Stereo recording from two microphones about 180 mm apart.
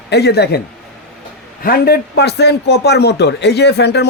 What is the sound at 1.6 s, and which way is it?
A man's voice, 60° left (ahead or behind).